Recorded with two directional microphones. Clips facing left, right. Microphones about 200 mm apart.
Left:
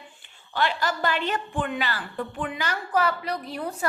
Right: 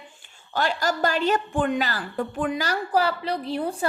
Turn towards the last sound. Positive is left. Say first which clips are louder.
# right 4 dB
turn(degrees=-30)  # may be behind; listen again after turning